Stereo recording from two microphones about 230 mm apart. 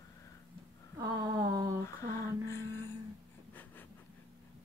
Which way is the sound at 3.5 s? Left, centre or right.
Centre.